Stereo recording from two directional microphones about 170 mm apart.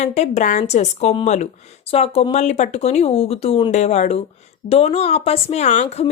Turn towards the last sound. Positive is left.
turn(degrees=40)  # may be behind; listen again after turning